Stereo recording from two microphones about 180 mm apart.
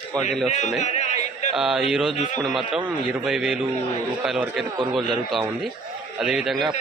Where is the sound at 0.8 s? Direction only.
40° left (ahead or behind).